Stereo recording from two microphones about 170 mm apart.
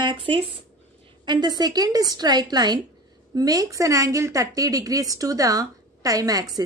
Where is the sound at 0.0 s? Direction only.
30° right (ahead or behind).